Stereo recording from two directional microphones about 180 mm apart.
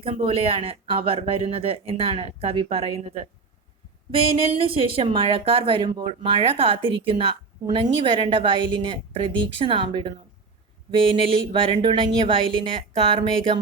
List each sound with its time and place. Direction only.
0.0 s speech: 30° right (ahead or behind)
4.6 s speech: 30° right (ahead or behind)